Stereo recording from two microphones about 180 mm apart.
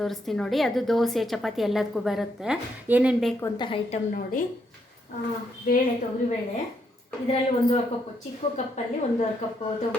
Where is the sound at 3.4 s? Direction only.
25° left (ahead or behind).